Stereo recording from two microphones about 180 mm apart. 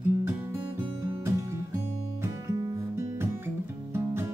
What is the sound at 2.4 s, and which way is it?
Guitar, 15° right (ahead or behind).